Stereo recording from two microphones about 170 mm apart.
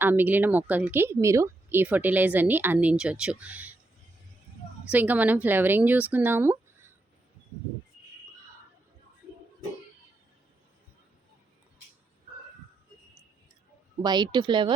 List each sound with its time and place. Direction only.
0.0 s speech: 10° right (ahead or behind)
4.9 s speech: 10° right (ahead or behind)
14.0 s speech: 25° right (ahead or behind)